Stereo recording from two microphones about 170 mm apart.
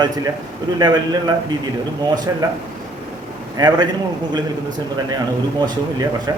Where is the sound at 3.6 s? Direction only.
25° right (ahead or behind).